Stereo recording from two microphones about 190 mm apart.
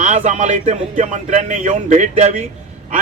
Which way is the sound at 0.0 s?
40° right (ahead or behind).